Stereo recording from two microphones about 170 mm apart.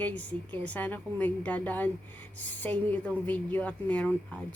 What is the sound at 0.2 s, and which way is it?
Speech, 10° left (ahead or behind).